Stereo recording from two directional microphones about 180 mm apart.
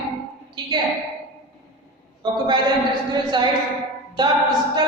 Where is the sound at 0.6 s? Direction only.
25° right (ahead or behind).